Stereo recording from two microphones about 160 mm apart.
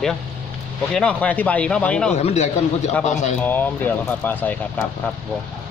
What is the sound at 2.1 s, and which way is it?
Speech, 45° left (ahead or behind).